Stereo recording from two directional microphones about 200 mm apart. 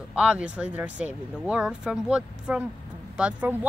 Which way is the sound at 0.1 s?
5° right (ahead or behind).